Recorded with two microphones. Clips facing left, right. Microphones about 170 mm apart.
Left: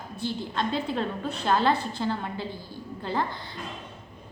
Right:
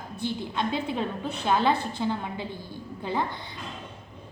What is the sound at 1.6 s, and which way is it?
A woman's voice, 15° right (ahead or behind).